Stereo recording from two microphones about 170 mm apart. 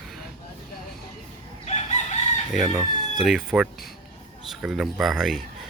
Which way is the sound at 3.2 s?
5° right (ahead or behind).